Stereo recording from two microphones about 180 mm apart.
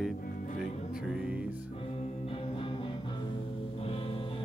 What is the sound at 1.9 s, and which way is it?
Music, 35° left (ahead or behind).